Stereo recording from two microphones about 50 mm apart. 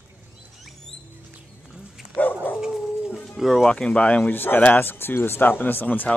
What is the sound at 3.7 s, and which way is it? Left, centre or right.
Speech, left.